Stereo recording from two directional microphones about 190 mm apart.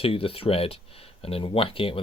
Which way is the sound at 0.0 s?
30° left (ahead or behind).